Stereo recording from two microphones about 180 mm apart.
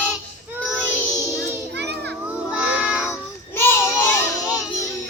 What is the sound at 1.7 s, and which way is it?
Children playing, 70° right (ahead or behind).